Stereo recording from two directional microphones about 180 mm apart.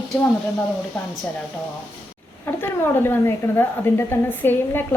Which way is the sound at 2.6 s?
15° left (ahead or behind).